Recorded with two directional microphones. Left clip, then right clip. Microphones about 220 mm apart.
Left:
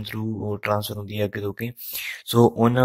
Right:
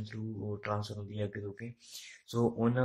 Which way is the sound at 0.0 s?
35° left (ahead or behind).